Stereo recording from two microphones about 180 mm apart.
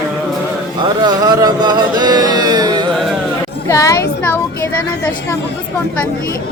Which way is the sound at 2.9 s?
Centre (ahead or behind).